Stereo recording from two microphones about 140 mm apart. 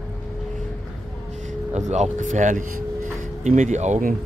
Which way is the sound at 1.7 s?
55° right (ahead or behind).